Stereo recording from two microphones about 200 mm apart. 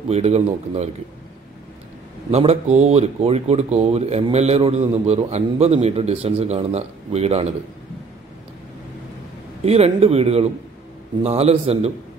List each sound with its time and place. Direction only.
0.1 s speech: 30° right (ahead or behind)
2.3 s speech: 30° right (ahead or behind)
9.7 s speech: 30° right (ahead or behind)